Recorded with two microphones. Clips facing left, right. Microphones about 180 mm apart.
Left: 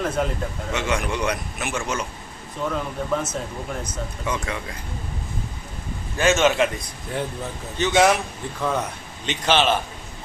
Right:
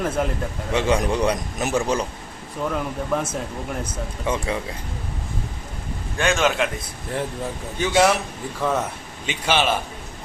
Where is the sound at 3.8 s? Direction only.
30° right (ahead or behind).